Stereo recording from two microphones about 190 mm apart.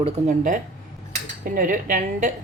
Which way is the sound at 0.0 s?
40° right (ahead or behind).